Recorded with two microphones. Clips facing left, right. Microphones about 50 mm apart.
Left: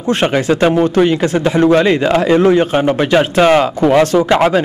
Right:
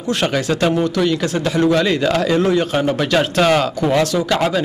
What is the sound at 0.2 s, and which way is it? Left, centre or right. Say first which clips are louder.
A man's voice: left 5 dB; left.